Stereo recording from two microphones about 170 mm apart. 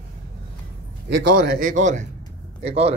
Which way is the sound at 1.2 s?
55° right (ahead or behind).